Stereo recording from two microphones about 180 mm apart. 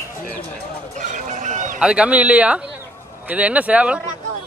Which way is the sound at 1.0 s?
45° right (ahead or behind).